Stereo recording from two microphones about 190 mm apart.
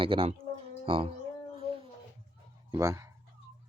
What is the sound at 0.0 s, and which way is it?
Speech, 30° right (ahead or behind).